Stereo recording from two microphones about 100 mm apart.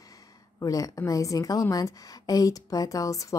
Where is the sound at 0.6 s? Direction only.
35° left (ahead or behind).